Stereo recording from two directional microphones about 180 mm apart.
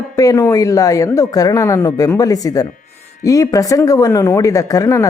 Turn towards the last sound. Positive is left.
turn(degrees=15)  # may be behind; listen again after turning